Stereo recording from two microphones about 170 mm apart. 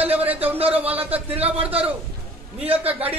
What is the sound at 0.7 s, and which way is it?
Speech, 10° right (ahead or behind).